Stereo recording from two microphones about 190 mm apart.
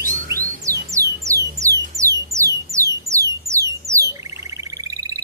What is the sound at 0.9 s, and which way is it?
Music, 15° right (ahead or behind).